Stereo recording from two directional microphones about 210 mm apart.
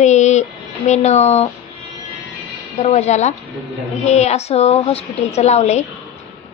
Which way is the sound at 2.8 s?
30° left (ahead or behind).